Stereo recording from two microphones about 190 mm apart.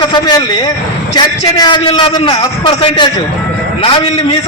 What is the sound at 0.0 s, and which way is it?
A man's voice, 20° left (ahead or behind).